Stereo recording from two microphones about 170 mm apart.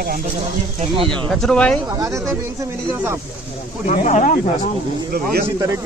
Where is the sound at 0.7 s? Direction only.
30° right (ahead or behind).